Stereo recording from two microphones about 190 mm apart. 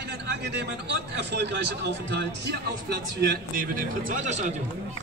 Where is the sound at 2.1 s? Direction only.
65° right (ahead or behind); by 4.5 s 40° right (ahead or behind).